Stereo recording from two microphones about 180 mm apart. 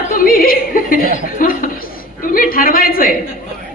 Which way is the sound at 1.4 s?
50° left (ahead or behind).